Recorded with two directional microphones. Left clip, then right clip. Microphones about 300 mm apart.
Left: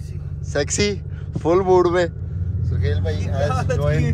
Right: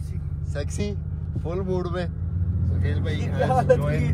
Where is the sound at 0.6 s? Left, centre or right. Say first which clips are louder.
Left 12 dB; left.